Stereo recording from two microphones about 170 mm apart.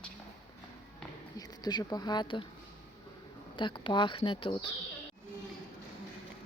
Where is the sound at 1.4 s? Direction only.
25° left (ahead or behind).